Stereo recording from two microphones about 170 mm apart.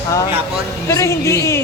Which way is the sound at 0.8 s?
15° left (ahead or behind).